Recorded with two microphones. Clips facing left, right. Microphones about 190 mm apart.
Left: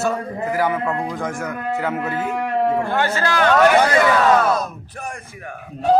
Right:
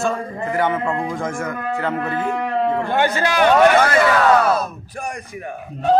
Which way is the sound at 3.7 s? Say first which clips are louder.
Even; 15° left (ahead or behind).